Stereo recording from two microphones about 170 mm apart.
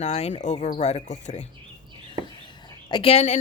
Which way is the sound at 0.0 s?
40° left (ahead or behind).